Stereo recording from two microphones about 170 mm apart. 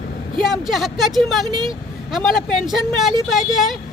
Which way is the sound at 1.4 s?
25° right (ahead or behind).